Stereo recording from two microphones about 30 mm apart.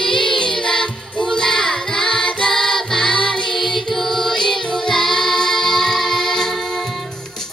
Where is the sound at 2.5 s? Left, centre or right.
Centre.